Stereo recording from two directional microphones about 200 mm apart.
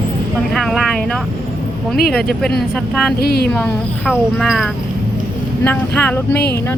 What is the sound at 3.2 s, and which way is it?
Speech, 50° left (ahead or behind).